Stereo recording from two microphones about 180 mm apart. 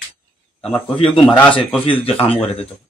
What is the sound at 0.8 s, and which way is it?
Speech, 30° left (ahead or behind).